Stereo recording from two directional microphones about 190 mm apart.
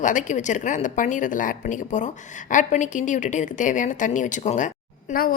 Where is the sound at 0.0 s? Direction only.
40° left (ahead or behind).